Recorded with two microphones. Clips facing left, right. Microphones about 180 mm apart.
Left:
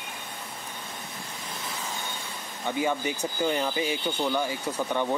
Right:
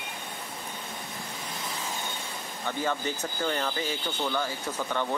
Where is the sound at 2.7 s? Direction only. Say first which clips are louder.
Left 3 dB; 15° left (ahead or behind).